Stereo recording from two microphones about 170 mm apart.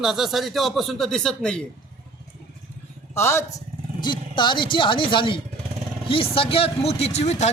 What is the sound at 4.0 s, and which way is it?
Speech, 25° left (ahead or behind).